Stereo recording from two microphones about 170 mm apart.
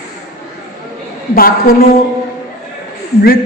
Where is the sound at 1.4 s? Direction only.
60° left (ahead or behind).